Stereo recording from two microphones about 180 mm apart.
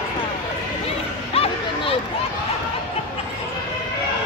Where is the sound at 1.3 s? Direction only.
30° left (ahead or behind).